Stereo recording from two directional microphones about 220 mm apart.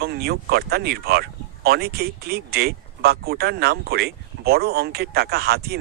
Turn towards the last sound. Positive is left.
turn(degrees=-45)  # may be behind; listen again after turning